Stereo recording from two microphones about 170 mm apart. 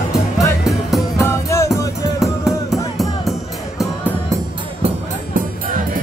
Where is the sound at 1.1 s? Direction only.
15° left (ahead or behind).